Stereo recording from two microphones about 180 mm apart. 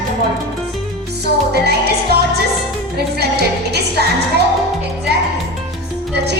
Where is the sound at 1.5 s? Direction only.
65° right (ahead or behind).